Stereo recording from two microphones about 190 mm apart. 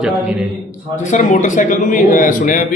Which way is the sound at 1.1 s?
40° left (ahead or behind).